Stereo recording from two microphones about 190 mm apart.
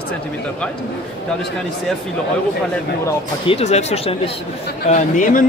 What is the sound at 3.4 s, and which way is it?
Speech, 30° left (ahead or behind).